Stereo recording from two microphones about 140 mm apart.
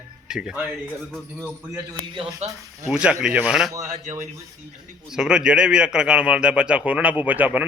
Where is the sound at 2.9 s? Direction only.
5° right (ahead or behind).